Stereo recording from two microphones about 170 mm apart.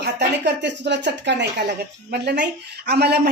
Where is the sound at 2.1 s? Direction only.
80° right.